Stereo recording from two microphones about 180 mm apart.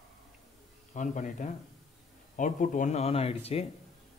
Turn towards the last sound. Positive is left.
turn(degrees=35)  # may be behind; listen again after turning